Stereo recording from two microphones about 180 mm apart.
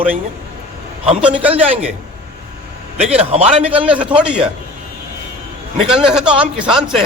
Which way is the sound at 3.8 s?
5° right (ahead or behind).